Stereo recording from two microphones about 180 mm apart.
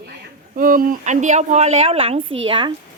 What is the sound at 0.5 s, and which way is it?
Speech, 50° right (ahead or behind).